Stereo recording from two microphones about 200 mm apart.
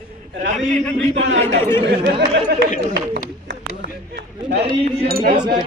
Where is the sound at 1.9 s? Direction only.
55° right (ahead or behind).